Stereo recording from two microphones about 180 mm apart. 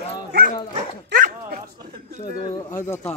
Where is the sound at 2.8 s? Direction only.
15° left (ahead or behind).